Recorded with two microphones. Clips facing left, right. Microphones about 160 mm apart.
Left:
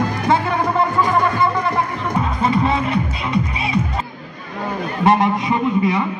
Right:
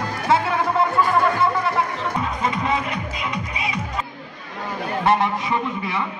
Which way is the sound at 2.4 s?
35° left (ahead or behind).